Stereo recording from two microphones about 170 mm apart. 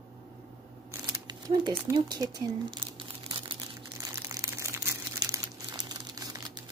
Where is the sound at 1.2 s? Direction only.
25° right (ahead or behind).